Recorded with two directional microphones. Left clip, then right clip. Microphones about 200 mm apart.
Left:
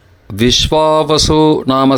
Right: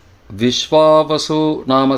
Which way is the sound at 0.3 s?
30° left (ahead or behind).